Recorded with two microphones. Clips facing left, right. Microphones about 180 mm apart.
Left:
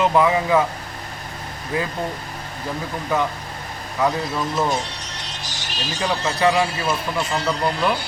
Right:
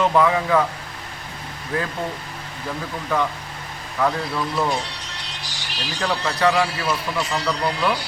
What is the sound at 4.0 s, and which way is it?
Speech, 20° left (ahead or behind).